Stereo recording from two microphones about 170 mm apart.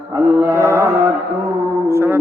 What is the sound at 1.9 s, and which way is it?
Music, 15° right (ahead or behind).